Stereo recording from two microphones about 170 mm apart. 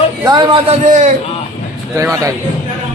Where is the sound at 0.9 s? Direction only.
45° right (ahead or behind).